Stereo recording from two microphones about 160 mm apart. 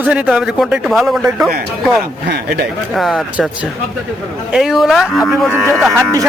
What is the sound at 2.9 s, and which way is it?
Speech, centre (ahead or behind).